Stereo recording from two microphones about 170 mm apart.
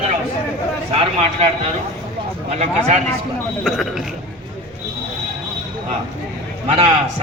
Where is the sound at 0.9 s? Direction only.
35° right (ahead or behind).